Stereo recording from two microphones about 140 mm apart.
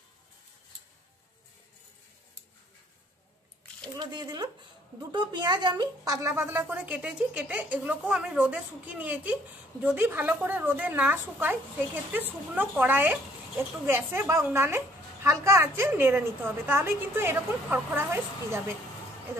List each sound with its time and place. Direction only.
3.9 s a woman's voice: 30° right (ahead or behind)